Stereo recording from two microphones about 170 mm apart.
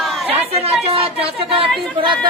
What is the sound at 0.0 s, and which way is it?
Chatter, centre (ahead or behind).